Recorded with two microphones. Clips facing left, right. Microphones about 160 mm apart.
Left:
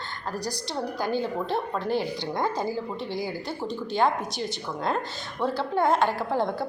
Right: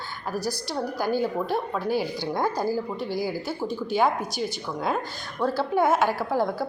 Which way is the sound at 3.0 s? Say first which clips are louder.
Right 3 dB; 5° right (ahead or behind).